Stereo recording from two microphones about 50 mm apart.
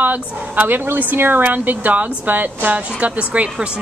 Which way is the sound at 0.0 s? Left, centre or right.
Right.